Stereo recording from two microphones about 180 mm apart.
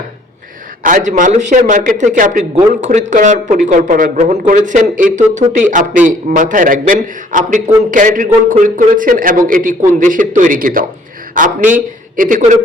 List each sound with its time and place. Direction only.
0.8 s a man's voice: 45° right (ahead or behind)